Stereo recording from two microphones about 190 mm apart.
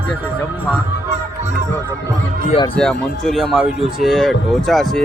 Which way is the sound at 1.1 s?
35° right (ahead or behind).